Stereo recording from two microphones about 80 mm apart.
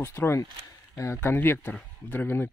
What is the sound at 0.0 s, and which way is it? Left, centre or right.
Speech, left.